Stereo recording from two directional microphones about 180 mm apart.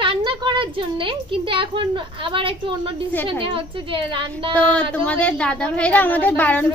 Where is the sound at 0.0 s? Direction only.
30° right (ahead or behind).